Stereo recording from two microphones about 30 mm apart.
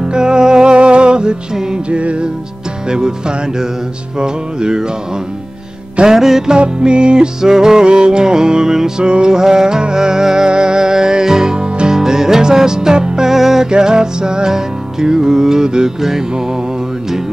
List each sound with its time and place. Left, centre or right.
0.0 s music: right
1.9 s music: right
2.9 s music: right
6.0 s music: centre
6.5 s music: right
7.8 s music: right
9.0 s music: right
11.5 s music: right
11.9 s music: centre
13.3 s music: centre
13.7 s music: right